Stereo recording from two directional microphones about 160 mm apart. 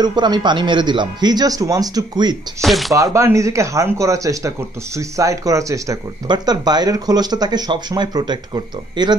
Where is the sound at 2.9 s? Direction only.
20° right (ahead or behind).